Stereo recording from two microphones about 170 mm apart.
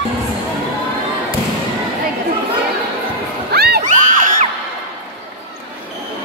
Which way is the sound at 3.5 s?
70° right (ahead or behind).